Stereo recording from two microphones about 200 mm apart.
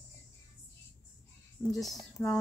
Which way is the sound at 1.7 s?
Centre (ahead or behind).